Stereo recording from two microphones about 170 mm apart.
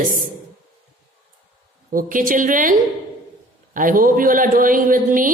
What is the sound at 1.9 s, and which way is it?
Speech, 55° right (ahead or behind).